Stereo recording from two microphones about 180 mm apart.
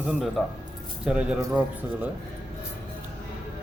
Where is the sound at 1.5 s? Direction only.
10° right (ahead or behind).